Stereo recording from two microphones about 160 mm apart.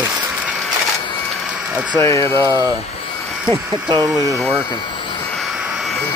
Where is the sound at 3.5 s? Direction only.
25° right (ahead or behind).